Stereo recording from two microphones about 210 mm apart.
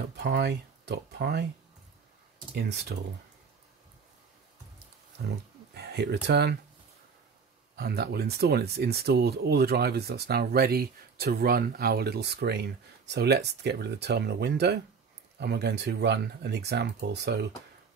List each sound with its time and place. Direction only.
0.2 s speech: 50° right (ahead or behind)
2.5 s speech: 50° right (ahead or behind)
5.8 s speech: 50° right (ahead or behind)
7.7 s speech: 50° right (ahead or behind)